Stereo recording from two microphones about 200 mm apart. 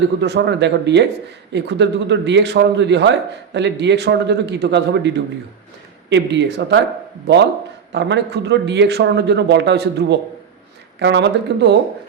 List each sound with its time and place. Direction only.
0.2 s a man's voice: 60° right (ahead or behind)